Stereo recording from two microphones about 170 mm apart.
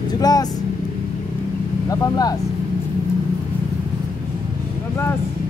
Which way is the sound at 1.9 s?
20° left (ahead or behind).